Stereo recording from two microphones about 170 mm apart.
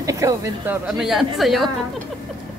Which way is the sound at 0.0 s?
20° right (ahead or behind).